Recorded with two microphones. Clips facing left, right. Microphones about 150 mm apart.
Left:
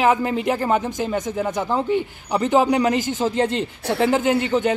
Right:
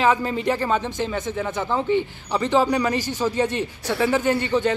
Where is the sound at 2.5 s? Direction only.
15° left (ahead or behind).